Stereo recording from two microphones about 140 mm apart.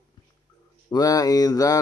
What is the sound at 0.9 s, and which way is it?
Speech, 30° left (ahead or behind).